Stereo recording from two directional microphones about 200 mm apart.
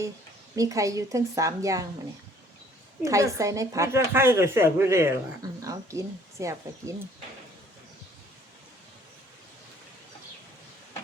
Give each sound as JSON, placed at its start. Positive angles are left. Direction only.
{"t": 0.5, "sound": "speech", "side_deg": -15}
{"t": 3.0, "sound": "speech", "side_deg": -15}